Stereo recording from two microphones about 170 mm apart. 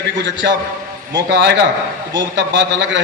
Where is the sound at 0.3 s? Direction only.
90° right.